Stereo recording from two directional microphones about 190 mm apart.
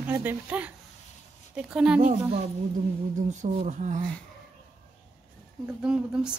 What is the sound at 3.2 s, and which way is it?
Speech, 40° right (ahead or behind).